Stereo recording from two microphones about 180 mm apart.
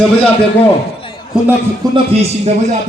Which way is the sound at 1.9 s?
35° right (ahead or behind).